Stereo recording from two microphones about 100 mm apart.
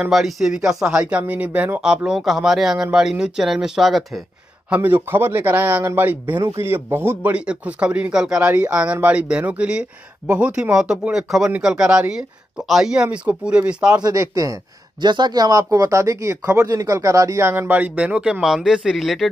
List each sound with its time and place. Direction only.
0.0 s speech: centre (ahead or behind)
1.2 s speech: 15° right (ahead or behind)
1.8 s speech: 5° right (ahead or behind)
4.6 s a man's voice: 15° right (ahead or behind)
6.4 s speech: 35° right (ahead or behind)
6.7 s a man's voice: 20° right (ahead or behind)
7.3 s speech: 10° right (ahead or behind)
13.9 s speech: 40° right (ahead or behind)
15.0 s speech: 50° right (ahead or behind); by 19.2 s centre (ahead or behind)